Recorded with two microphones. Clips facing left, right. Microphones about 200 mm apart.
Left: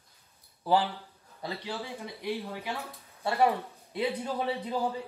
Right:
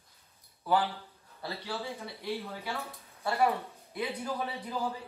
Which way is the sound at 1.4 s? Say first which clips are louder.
Left 1 dB; 15° left (ahead or behind).